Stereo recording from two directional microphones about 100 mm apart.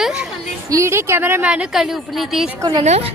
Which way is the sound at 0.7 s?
30° right (ahead or behind).